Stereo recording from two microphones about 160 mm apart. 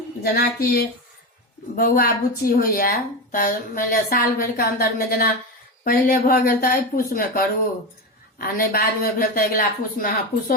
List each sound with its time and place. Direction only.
0.2 s a woman's voice: 75° left (ahead or behind)
1.7 s a woman's voice: 65° left (ahead or behind)